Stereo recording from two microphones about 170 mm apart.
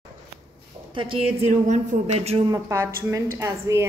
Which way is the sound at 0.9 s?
30° right (ahead or behind).